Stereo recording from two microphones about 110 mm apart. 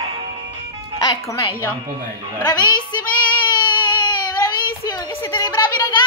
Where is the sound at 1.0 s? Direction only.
30° left (ahead or behind).